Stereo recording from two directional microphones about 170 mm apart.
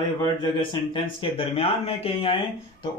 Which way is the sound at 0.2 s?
25° left (ahead or behind).